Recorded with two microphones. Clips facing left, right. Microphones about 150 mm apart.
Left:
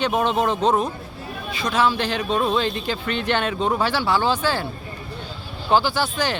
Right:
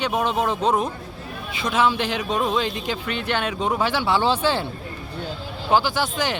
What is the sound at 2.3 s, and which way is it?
Speech, centre (ahead or behind).